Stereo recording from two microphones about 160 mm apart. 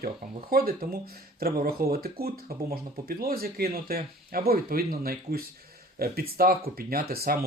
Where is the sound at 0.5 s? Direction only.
70° right (ahead or behind).